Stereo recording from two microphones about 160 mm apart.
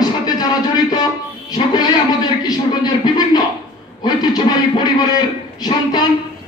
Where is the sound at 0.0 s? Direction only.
25° left (ahead or behind).